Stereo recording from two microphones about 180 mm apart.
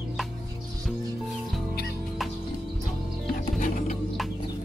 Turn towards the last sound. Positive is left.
turn(degrees=45)  # may be behind; listen again after turning